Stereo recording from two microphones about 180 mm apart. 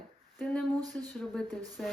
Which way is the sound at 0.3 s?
5° left (ahead or behind).